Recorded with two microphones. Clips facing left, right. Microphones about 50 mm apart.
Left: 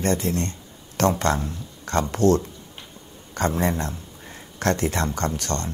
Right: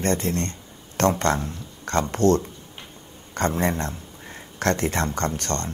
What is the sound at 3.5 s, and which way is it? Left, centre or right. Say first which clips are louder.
Speech: even; right.